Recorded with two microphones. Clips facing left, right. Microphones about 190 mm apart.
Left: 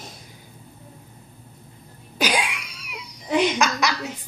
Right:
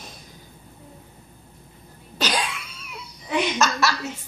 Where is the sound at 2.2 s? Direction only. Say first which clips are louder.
Left 2 dB; 10° left (ahead or behind).